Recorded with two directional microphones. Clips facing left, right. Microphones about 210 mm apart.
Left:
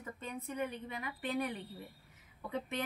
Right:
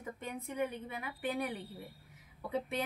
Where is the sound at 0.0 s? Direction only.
10° right (ahead or behind).